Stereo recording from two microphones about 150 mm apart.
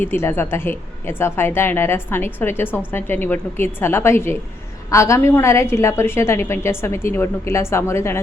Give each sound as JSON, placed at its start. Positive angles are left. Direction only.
{"t": 0.0, "sound": "speech", "side_deg": 15}